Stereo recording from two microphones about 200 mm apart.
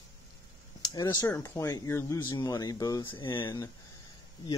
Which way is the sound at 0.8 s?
20° left (ahead or behind).